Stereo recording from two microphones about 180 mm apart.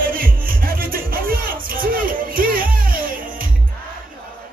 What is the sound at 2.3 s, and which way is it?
Music, 50° right (ahead or behind).